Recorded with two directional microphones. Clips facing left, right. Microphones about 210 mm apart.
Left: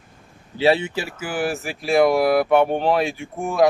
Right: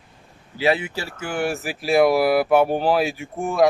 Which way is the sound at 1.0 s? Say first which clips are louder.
Even; 5° left (ahead or behind).